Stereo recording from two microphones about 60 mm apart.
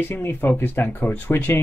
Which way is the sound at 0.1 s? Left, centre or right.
Left.